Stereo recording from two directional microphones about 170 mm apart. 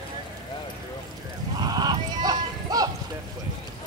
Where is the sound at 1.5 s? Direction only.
25° right (ahead or behind).